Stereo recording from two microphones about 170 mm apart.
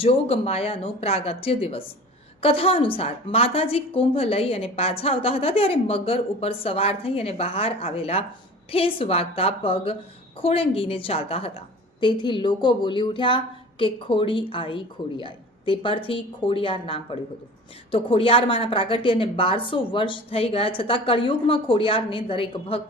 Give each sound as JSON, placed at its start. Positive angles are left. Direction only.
{"t": 0.0, "sound": "a woman's voice", "side_deg": 35}